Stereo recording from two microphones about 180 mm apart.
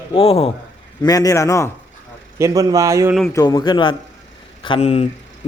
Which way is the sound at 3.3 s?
20° left (ahead or behind).